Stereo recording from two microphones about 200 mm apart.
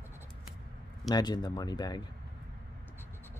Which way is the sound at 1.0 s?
20° left (ahead or behind).